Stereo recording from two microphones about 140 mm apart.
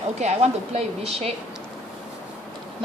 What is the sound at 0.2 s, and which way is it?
A woman's voice, 50° right (ahead or behind).